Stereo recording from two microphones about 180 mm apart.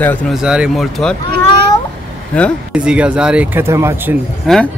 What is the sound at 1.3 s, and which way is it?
Cat, 70° right (ahead or behind).